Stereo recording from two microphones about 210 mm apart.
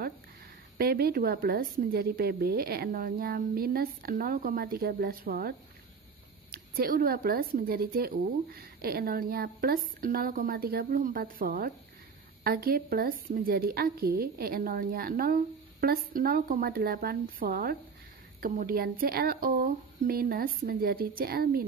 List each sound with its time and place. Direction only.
0.7 s speech: 45° right (ahead or behind)